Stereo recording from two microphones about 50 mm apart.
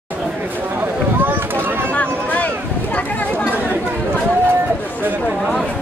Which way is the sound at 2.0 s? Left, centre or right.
Left.